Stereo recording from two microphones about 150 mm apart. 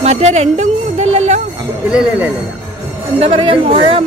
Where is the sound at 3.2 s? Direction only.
35° right (ahead or behind).